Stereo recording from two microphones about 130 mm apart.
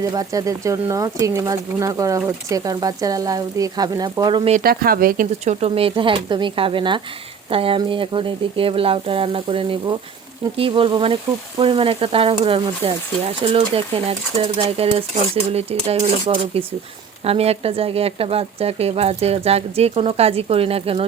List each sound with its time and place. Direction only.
0.0 s speech: 25° right (ahead or behind)
4.4 s speech: 80° right
5.5 s speech: 50° right (ahead or behind)
7.5 s frying: 45° right (ahead or behind)
16.2 s speech: 40° right (ahead or behind)
17.2 s frying: 50° right (ahead or behind)